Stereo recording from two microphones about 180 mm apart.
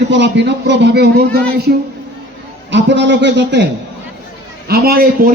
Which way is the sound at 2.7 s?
80° right.